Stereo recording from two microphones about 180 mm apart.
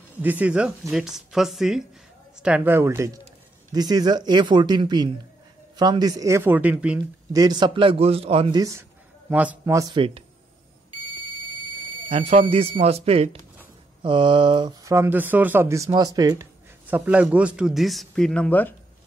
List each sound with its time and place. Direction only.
0.1 s a man's voice: 10° right (ahead or behind)
7.3 s speech: 20° right (ahead or behind)
8.5 s speech: 15° right (ahead or behind)
11.2 s fire alarm: 25° left (ahead or behind)
12.1 s speech: 35° right (ahead or behind)
16.8 s a man's voice: 10° right (ahead or behind); by 18.8 s 10° left (ahead or behind)